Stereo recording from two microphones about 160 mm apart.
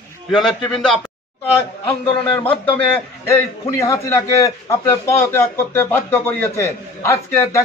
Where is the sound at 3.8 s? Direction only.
15° left (ahead or behind).